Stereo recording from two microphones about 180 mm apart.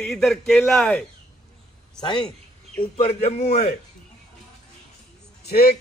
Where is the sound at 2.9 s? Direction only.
35° left (ahead or behind).